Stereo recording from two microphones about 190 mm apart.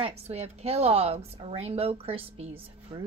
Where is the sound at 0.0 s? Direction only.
35° right (ahead or behind).